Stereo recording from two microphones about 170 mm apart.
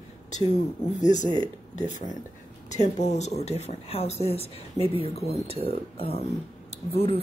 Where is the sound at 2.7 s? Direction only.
45° left (ahead or behind).